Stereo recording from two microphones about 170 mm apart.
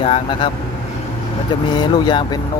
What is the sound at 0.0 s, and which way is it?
Speech, 30° left (ahead or behind).